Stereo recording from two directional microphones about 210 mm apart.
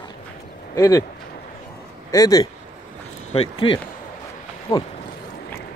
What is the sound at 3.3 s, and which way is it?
Speech, 25° left (ahead or behind).